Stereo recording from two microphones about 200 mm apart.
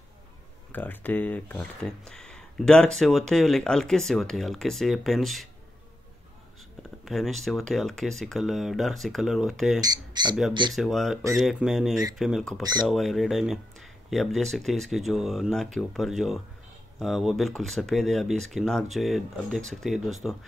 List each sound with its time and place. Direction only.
0.7 s speech: 10° left (ahead or behind)
6.8 s speech: centre (ahead or behind)
9.8 s speech: 20° right (ahead or behind)
10.7 s speech: centre (ahead or behind)
11.9 s speech: 15° right (ahead or behind)
12.2 s speech: centre (ahead or behind)